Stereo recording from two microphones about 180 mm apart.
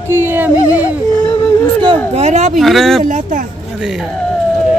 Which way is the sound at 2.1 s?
40° right (ahead or behind).